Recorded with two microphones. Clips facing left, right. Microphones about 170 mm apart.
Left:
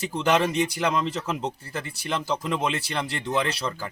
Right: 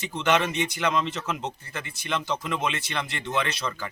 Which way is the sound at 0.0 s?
35° left (ahead or behind).